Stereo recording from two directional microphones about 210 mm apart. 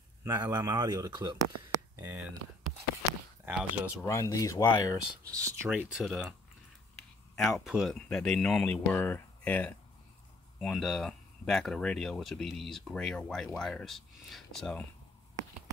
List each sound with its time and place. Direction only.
0.2 s speech: 15° right (ahead or behind)
3.4 s speech: 5° right (ahead or behind)
4.0 s speech: 15° left (ahead or behind)
5.2 s speech: 15° right (ahead or behind)
5.9 s speech: centre (ahead or behind)
7.3 s speech: centre (ahead or behind)